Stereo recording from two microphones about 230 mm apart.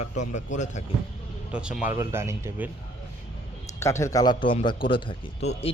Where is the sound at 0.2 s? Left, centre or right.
Left.